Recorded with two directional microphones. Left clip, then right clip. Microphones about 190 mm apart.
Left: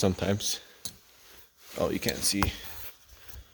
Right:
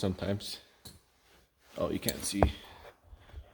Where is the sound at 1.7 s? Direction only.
30° left (ahead or behind).